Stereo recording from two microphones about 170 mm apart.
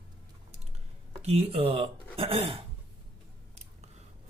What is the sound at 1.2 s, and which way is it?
Speech, 35° right (ahead or behind).